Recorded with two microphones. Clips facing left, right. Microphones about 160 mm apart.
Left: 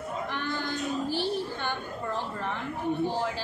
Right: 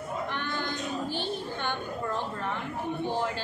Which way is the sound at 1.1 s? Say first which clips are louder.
Left 3 dB; 5° left (ahead or behind).